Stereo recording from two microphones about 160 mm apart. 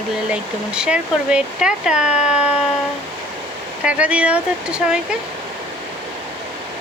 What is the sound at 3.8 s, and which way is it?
Speech, 5° right (ahead or behind).